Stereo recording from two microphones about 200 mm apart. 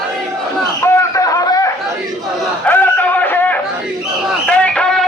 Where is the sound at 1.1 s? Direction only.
15° left (ahead or behind).